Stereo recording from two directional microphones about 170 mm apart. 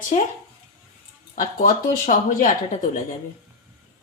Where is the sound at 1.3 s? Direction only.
55° left (ahead or behind).